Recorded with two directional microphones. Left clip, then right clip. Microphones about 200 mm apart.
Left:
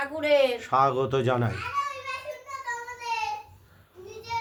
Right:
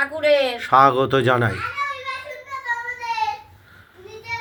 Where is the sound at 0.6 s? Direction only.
20° right (ahead or behind).